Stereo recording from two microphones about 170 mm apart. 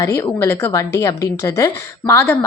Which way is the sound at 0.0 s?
15° left (ahead or behind).